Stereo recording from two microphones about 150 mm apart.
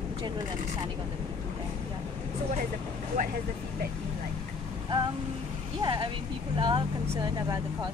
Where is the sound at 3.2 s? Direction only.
60° right (ahead or behind).